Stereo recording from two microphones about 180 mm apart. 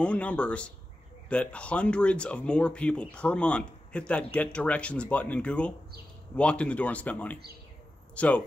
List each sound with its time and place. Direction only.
0.0 s speech: 5° left (ahead or behind)